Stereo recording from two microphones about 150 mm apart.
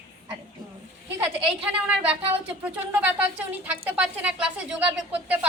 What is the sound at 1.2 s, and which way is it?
A woman's voice, 10° right (ahead or behind).